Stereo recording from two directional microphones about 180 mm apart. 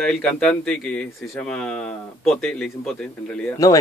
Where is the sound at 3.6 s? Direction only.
15° left (ahead or behind).